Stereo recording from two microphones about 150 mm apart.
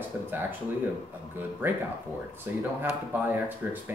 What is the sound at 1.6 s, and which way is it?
Speech, 10° right (ahead or behind).